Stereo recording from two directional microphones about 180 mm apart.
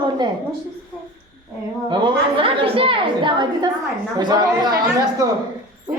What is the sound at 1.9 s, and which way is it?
A woman's voice, 25° right (ahead or behind).